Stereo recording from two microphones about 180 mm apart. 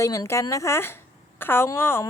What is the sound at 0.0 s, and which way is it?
A woman's voice, 15° left (ahead or behind).